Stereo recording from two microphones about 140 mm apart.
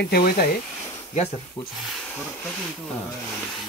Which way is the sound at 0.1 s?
90° left.